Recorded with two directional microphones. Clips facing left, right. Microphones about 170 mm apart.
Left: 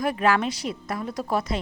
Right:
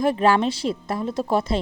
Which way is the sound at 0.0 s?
30° right (ahead or behind).